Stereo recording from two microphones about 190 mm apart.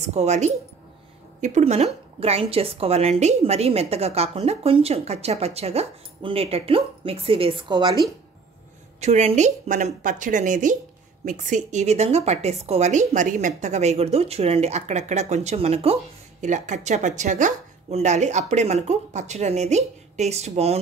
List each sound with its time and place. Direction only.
0.0 s speech: 35° right (ahead or behind)
9.0 s a woman's voice: 35° right (ahead or behind)